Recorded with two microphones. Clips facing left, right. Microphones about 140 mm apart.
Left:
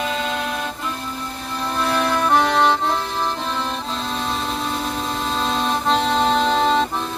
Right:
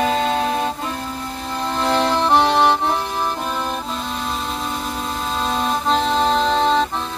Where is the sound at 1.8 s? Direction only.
30° right (ahead or behind).